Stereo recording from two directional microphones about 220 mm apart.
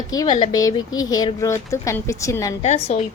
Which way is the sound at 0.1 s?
15° left (ahead or behind).